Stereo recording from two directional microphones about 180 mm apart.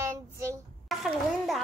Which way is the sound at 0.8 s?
Centre (ahead or behind).